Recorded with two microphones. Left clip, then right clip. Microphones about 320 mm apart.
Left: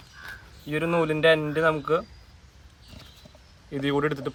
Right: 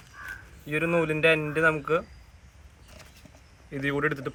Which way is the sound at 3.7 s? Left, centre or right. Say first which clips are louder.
Left 2 dB; centre.